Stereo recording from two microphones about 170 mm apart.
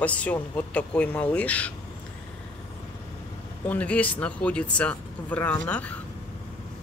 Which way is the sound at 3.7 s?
10° left (ahead or behind).